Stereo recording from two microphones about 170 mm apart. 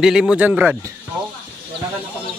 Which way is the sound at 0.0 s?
5° right (ahead or behind).